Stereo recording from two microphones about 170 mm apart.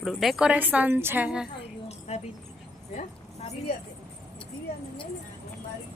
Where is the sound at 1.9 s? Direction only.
40° left (ahead or behind).